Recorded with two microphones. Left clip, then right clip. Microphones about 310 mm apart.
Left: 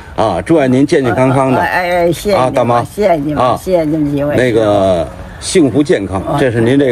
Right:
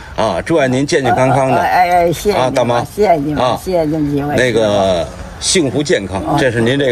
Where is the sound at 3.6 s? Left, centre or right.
Centre.